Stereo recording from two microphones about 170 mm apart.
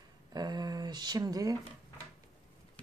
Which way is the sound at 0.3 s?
25° right (ahead or behind).